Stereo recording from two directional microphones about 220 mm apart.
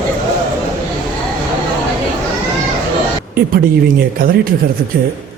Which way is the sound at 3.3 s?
40° right (ahead or behind).